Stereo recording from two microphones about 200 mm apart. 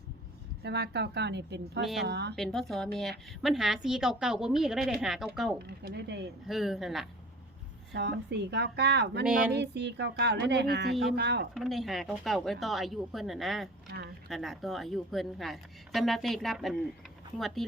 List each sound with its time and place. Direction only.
0.6 s speech: 55° right (ahead or behind)
1.8 s a woman's voice: centre (ahead or behind)
2.0 s speech: 55° right (ahead or behind)
2.3 s a woman's voice: centre (ahead or behind)
5.6 s speech: 55° right (ahead or behind)
6.5 s a woman's voice: centre (ahead or behind)
7.9 s speech: 55° right (ahead or behind)
9.2 s a woman's voice: 5° right (ahead or behind)
9.5 s speech: 60° right (ahead or behind)
11.5 s a woman's voice: centre (ahead or behind)